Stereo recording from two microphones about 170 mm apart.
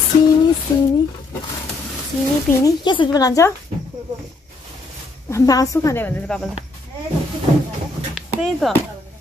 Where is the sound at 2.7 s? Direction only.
25° left (ahead or behind).